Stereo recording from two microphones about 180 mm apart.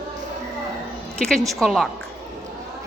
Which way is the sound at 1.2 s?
5° left (ahead or behind).